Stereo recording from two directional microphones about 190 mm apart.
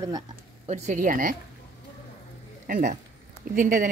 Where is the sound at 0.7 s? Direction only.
40° right (ahead or behind).